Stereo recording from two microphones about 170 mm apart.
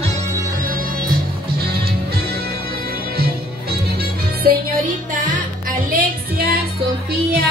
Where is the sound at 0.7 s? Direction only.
60° right (ahead or behind).